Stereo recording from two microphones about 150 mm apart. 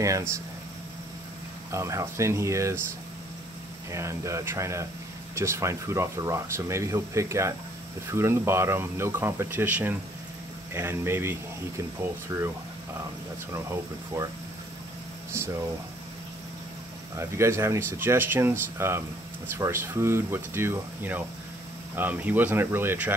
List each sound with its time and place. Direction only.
0.0 s speech: 20° right (ahead or behind)
1.7 s speech: 20° right (ahead or behind)
3.9 s speech: 20° right (ahead or behind)
13.5 s speech: 20° right (ahead or behind)
17.2 s speech: 15° right (ahead or behind)